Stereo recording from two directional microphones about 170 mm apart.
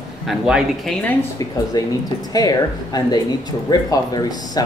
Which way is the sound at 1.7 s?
20° left (ahead or behind).